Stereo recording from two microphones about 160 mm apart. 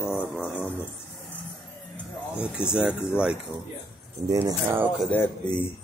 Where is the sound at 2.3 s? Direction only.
5° right (ahead or behind).